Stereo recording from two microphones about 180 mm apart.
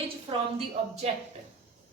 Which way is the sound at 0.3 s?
30° right (ahead or behind).